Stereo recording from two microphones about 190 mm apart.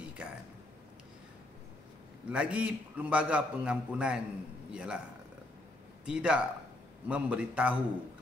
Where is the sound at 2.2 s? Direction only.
5° right (ahead or behind).